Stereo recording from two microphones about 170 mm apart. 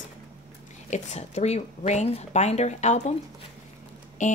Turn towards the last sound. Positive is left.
turn(degrees=50)  # may be behind; listen again after turning